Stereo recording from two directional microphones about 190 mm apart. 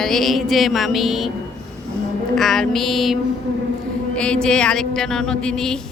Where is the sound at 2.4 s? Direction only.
Centre (ahead or behind).